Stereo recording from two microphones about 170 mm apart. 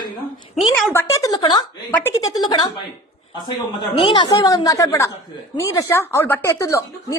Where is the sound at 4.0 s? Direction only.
25° left (ahead or behind).